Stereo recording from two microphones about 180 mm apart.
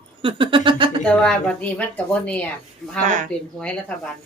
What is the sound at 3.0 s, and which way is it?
Speech, 45° right (ahead or behind).